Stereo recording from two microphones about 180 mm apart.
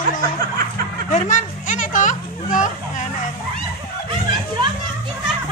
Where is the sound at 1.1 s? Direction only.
45° left (ahead or behind).